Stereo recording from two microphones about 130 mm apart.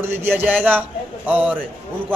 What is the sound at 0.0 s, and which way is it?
A man's voice, 15° right (ahead or behind).